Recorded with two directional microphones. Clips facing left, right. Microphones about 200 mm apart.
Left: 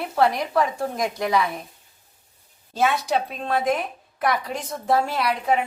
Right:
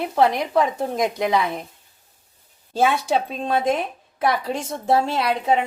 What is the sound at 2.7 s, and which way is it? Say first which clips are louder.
A woman's voice: right 2 dB; 30° right (ahead or behind).